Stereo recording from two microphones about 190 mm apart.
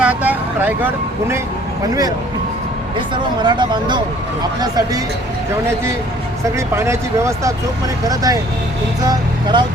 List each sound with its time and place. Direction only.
0.0 s vehicle: 10° right (ahead or behind)
3.4 s speech: 25° right (ahead or behind)
6.7 s speech: 15° right (ahead or behind)